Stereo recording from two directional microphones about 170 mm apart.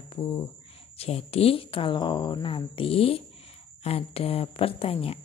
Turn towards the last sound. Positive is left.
turn(degrees=35)  # may be behind; listen again after turning